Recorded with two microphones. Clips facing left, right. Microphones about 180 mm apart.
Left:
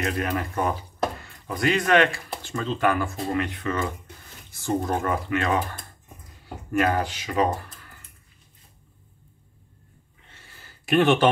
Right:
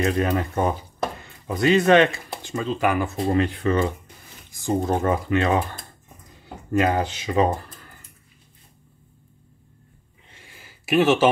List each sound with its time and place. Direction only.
0.0 s speech: 25° right (ahead or behind)
3.1 s speech: 30° right (ahead or behind)
4.5 s speech: 15° right (ahead or behind)
10.2 s a sound: 15° right (ahead or behind)